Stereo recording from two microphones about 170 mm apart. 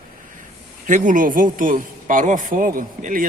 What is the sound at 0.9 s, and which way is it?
Speech, 50° right (ahead or behind).